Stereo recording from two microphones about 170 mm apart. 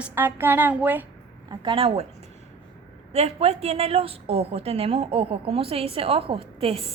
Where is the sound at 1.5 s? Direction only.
30° right (ahead or behind).